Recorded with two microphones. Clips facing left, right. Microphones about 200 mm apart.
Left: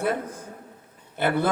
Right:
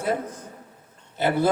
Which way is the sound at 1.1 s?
55° left (ahead or behind).